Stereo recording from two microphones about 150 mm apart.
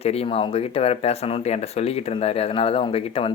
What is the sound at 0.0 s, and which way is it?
Speech, 40° left (ahead or behind).